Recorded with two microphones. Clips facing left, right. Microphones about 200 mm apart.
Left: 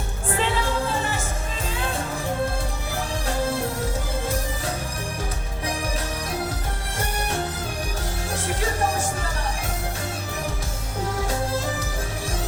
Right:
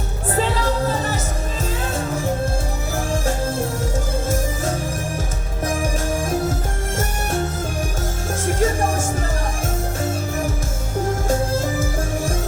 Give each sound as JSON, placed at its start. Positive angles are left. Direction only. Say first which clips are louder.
{"t": 0.3, "sound": "music", "louder": "right 4 dB", "side_deg": -40}
{"t": 3.2, "sound": "music", "louder": "left 1 dB", "side_deg": -45}
{"t": 8.4, "sound": "music", "louder": "right 9 dB", "side_deg": -45}
{"t": 11.3, "sound": "music", "louder": "right 5 dB", "side_deg": -45}